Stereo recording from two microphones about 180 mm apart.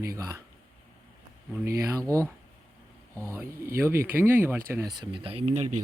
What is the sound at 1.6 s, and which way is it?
Speech, 15° right (ahead or behind).